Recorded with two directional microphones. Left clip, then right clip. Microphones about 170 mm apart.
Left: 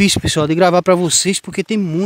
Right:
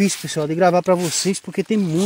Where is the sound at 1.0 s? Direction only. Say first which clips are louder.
Left 6 dB; 50° left (ahead or behind).